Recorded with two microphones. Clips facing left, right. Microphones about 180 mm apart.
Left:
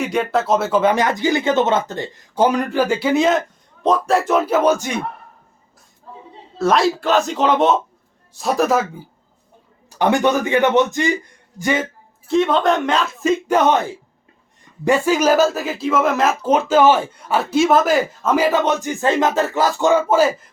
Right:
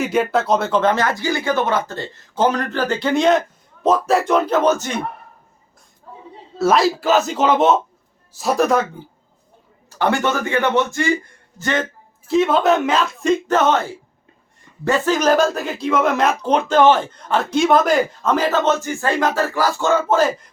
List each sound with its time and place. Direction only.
0.0 s speech: centre (ahead or behind)
6.6 s speech: 5° right (ahead or behind)
10.0 s speech: 15° left (ahead or behind)
12.3 s speech: 5° right (ahead or behind)